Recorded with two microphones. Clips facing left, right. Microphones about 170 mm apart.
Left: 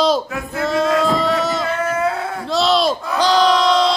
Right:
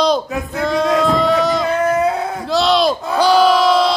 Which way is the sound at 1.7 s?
15° right (ahead or behind).